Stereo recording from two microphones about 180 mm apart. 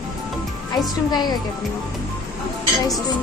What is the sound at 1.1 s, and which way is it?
Speech, 25° left (ahead or behind).